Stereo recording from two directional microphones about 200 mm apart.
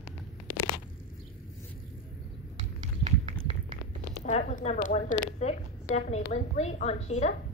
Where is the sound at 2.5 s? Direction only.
35° right (ahead or behind).